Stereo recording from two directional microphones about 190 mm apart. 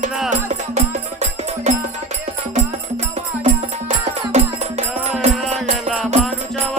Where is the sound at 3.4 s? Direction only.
35° right (ahead or behind).